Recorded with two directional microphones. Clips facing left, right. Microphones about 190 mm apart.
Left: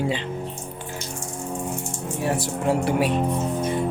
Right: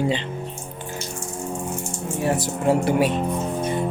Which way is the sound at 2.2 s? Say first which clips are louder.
Right 2 dB; centre (ahead or behind).